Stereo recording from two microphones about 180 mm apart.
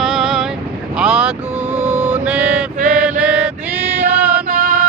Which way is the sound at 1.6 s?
35° right (ahead or behind).